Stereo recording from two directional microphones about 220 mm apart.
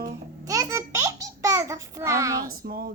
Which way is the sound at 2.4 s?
40° right (ahead or behind).